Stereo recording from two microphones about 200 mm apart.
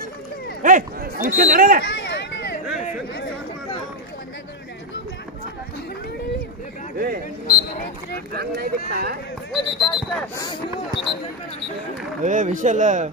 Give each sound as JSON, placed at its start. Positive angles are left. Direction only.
{"t": 0.6, "sound": "speech", "side_deg": -40}
{"t": 2.0, "sound": "a sound", "side_deg": 60}
{"t": 7.0, "sound": "speech", "side_deg": -50}
{"t": 8.5, "sound": "speech", "side_deg": -50}
{"t": 9.6, "sound": "speech", "side_deg": 20}
{"t": 9.9, "sound": "speech", "side_deg": 5}
{"t": 10.4, "sound": "speech", "side_deg": 25}
{"t": 12.2, "sound": "speech", "side_deg": -40}